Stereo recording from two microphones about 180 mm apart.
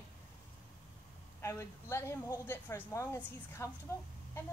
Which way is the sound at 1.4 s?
15° left (ahead or behind).